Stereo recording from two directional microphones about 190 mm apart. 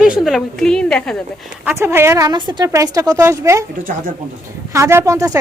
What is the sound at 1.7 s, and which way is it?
Speech, 10° right (ahead or behind).